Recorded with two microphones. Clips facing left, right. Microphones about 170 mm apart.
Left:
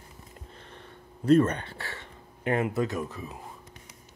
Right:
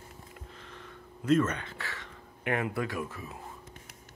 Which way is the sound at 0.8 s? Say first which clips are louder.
Left 5 dB; 35° left (ahead or behind).